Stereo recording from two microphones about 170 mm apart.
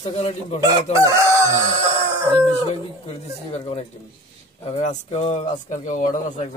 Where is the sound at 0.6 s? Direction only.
20° right (ahead or behind).